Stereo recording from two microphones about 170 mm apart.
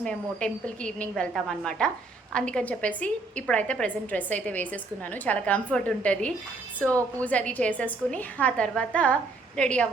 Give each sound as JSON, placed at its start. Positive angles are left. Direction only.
{"t": 0.0, "sound": "a woman's voice", "side_deg": 5}